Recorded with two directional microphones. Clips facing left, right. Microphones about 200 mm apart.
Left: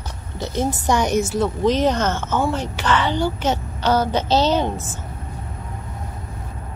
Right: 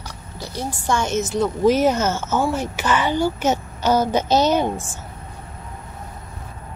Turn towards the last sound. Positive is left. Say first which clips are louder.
# right 1 dB
turn(degrees=-10)  # may be behind; listen again after turning